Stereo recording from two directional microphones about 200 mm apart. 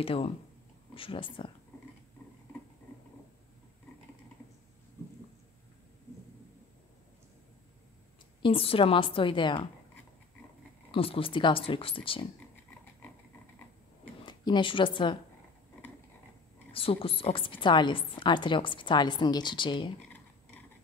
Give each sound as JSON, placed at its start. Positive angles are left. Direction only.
{"t": 0.0, "sound": "a woman's voice", "side_deg": 30}
{"t": 8.4, "sound": "a woman's voice", "side_deg": 25}
{"t": 10.9, "sound": "a woman's voice", "side_deg": 25}
{"t": 14.2, "sound": "speech", "side_deg": 20}
{"t": 16.7, "sound": "a woman's voice", "side_deg": 30}